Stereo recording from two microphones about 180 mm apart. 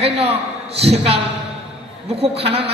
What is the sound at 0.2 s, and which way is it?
A man's voice, 35° right (ahead or behind).